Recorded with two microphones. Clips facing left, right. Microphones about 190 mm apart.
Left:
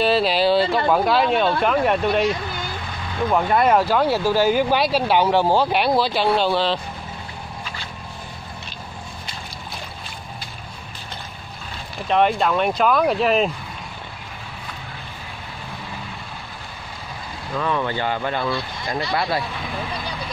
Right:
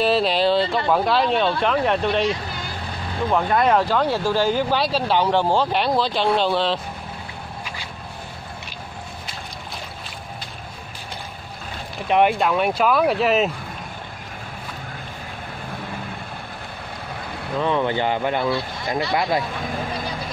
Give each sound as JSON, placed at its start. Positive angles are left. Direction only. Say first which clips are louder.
{"t": 0.0, "sound": "a sound", "louder": "even", "side_deg": 0}
{"t": 0.9, "sound": "speech", "louder": "even", "side_deg": 5}
{"t": 3.3, "sound": "speech", "louder": "left 1 dB", "side_deg": 5}
{"t": 12.1, "sound": "speech", "louder": "right 1 dB", "side_deg": -10}
{"t": 17.6, "sound": "speech", "louder": "right 2 dB", "side_deg": -20}
{"t": 19.6, "sound": "speech", "louder": "right 2 dB", "side_deg": -45}